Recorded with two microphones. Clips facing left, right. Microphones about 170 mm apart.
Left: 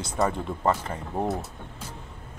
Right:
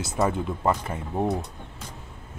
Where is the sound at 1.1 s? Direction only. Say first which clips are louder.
Right 2 dB; centre (ahead or behind).